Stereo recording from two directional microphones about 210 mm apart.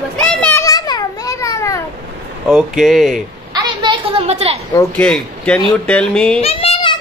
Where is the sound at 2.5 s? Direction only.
Centre (ahead or behind).